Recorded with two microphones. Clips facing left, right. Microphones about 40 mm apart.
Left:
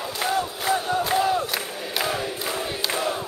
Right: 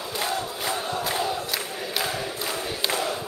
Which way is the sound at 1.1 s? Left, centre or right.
Centre.